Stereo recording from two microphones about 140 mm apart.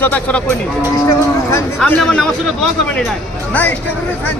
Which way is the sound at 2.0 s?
5° left (ahead or behind).